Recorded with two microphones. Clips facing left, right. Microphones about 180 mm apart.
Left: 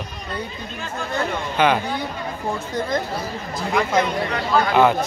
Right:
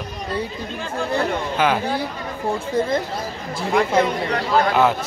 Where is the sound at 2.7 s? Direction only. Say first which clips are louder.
Right 6 dB; 30° right (ahead or behind).